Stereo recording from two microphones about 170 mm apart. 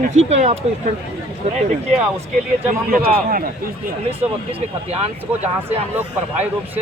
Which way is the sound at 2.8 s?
55° right (ahead or behind).